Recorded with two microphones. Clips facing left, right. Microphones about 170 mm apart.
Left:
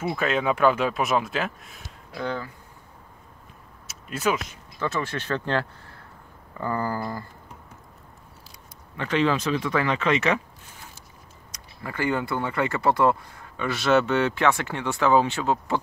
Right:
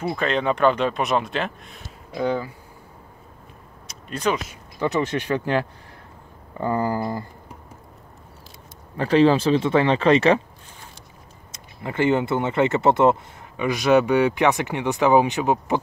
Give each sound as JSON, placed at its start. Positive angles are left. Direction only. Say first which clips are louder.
{"t": 0.0, "sound": "speech", "louder": "right 2 dB", "side_deg": 5}
{"t": 2.1, "sound": "speech", "louder": "right 6 dB", "side_deg": -15}
{"t": 3.8, "sound": "vehicle", "louder": "right 2 dB", "side_deg": 5}
{"t": 4.5, "sound": "speech", "louder": "right 5 dB", "side_deg": -15}
{"t": 8.9, "sound": "speech", "louder": "right 7 dB", "side_deg": -35}
{"t": 11.5, "sound": "speech", "louder": "right 6 dB", "side_deg": -25}